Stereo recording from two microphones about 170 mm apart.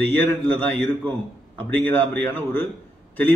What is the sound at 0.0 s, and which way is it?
A man's voice, 10° left (ahead or behind).